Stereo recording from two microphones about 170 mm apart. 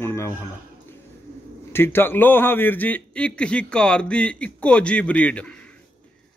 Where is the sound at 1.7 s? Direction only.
15° left (ahead or behind).